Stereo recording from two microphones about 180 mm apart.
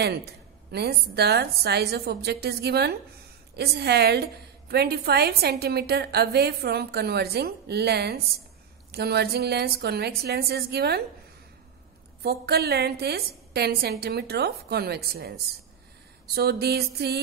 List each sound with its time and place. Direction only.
0.0 s a woman's voice: 65° right (ahead or behind)
12.2 s a woman's voice: 60° right (ahead or behind)